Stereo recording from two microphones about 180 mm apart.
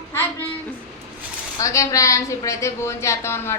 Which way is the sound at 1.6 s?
15° left (ahead or behind).